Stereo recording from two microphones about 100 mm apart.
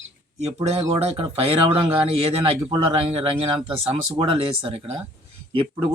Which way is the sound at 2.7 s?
75° right (ahead or behind).